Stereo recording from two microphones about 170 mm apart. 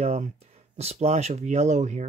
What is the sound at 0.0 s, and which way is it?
Speech, 40° right (ahead or behind).